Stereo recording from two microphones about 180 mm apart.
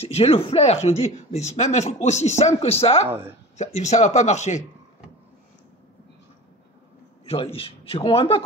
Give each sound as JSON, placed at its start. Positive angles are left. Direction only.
{"t": 0.0, "sound": "speech", "side_deg": 35}
{"t": 7.2, "sound": "speech", "side_deg": 30}